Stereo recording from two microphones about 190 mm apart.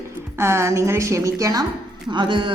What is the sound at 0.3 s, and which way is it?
A woman's voice, 15° right (ahead or behind).